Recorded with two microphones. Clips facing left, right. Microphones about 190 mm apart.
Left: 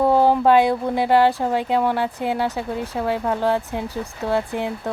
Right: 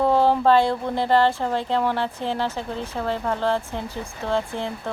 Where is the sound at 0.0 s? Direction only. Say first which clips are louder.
Left 2 dB; 10° left (ahead or behind).